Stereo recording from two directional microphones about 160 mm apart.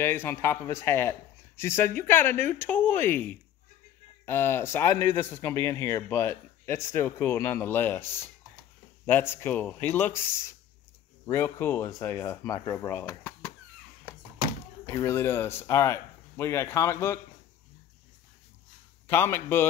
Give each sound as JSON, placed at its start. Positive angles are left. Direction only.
{"t": 0.0, "sound": "a man's voice", "side_deg": 15}
{"t": 14.9, "sound": "a man's voice", "side_deg": 15}
{"t": 19.0, "sound": "a man's voice", "side_deg": 15}